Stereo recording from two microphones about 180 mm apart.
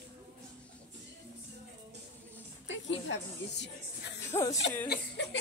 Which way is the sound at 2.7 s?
90° left.